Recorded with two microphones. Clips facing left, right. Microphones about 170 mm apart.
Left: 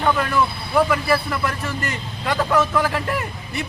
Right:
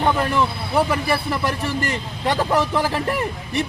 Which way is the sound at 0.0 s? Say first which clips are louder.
Even; 25° right (ahead or behind).